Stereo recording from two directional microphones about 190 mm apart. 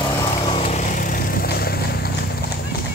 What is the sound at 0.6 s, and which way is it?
Vehicle, 40° left (ahead or behind).